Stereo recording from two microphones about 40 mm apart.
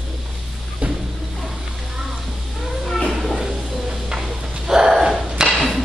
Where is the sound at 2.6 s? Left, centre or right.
Centre.